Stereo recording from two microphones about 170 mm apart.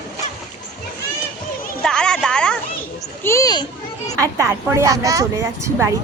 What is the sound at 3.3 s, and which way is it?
Speech, 20° left (ahead or behind).